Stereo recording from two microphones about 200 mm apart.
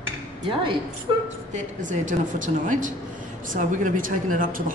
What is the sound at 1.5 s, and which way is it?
Speech, 40° right (ahead or behind).